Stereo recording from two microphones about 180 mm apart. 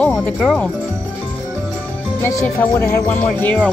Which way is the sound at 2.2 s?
15° left (ahead or behind).